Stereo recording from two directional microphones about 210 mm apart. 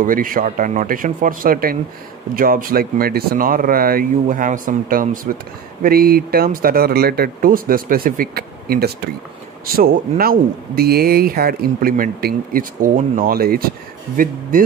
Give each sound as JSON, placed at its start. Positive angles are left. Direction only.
{"t": 0.0, "sound": "speech", "side_deg": -40}